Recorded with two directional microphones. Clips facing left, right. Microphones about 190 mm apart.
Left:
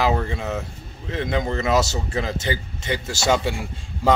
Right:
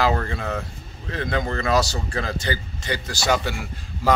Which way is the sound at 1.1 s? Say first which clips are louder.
Left 2 dB; 20° left (ahead or behind).